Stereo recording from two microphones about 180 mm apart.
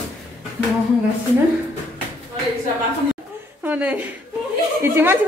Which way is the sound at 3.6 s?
10° right (ahead or behind).